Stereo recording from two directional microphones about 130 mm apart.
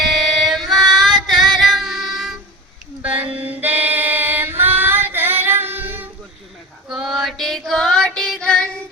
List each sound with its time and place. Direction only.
0.0 s female singing: centre (ahead or behind)
3.0 s a sound: 10° right (ahead or behind)
3.3 s music: 15° right (ahead or behind)
6.8 s female singing: 5° right (ahead or behind)